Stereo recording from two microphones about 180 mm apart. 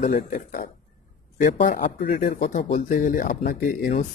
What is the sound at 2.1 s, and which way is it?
Speech, 60° left (ahead or behind).